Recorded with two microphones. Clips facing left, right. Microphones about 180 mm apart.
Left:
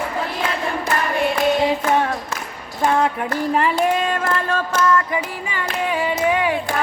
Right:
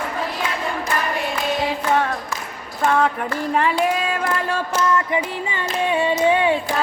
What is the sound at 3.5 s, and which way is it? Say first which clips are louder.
Child singing: left 1 dB; centre (ahead or behind).